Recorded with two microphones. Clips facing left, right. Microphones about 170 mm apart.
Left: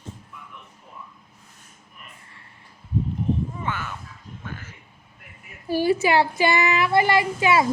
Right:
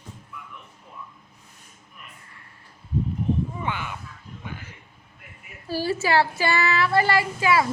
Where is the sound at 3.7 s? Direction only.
15° right (ahead or behind).